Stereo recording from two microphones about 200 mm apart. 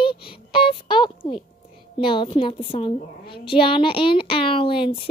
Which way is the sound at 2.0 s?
25° left (ahead or behind).